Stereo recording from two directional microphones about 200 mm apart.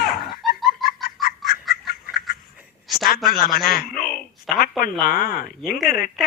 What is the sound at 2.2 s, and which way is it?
Frog, 50° left (ahead or behind).